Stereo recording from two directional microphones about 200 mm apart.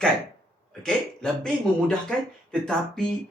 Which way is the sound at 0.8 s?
5° left (ahead or behind).